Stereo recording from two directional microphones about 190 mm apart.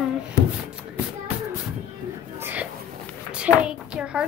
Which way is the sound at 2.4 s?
10° right (ahead or behind).